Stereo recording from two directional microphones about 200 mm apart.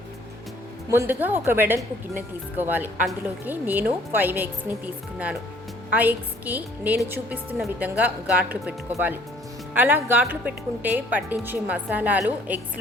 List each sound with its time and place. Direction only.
0.9 s a woman's voice: 10° right (ahead or behind)
5.9 s a woman's voice: 10° right (ahead or behind)
9.7 s a woman's voice: 10° right (ahead or behind)